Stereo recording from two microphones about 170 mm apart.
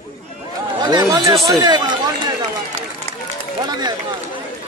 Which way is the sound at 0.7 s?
25° right (ahead or behind).